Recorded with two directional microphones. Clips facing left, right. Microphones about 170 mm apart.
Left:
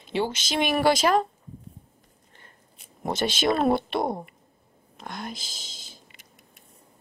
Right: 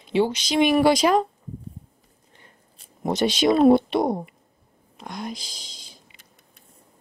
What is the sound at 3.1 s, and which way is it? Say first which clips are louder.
Speech: right 5 dB; 5° left (ahead or behind).